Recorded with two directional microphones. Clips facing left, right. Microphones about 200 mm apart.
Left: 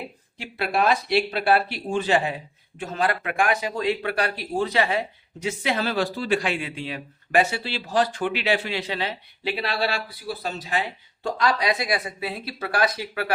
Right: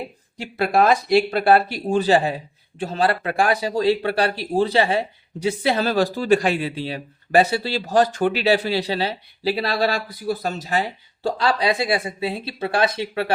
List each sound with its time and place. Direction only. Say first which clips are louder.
0.3 s speech: right 6 dB; 40° right (ahead or behind)